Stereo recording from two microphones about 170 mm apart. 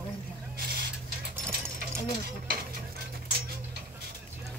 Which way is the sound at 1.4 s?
15° right (ahead or behind).